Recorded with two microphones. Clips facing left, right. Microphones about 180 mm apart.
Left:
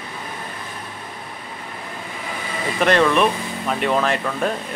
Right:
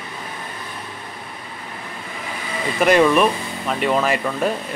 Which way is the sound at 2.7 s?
10° right (ahead or behind).